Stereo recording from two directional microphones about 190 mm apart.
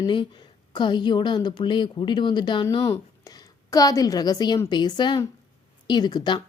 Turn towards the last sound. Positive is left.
turn(degrees=25)  # may be behind; listen again after turning